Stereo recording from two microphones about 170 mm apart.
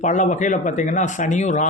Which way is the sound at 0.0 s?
45° left (ahead or behind).